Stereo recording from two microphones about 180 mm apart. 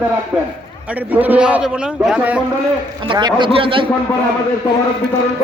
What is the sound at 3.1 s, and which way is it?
Speech, 25° right (ahead or behind).